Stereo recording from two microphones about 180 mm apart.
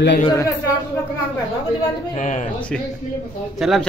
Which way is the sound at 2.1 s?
40° left (ahead or behind).